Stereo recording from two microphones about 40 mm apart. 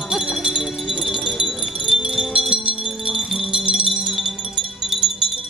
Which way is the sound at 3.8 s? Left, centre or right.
Centre.